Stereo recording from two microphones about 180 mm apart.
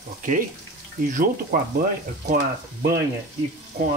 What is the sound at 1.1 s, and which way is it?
Speech, 50° right (ahead or behind).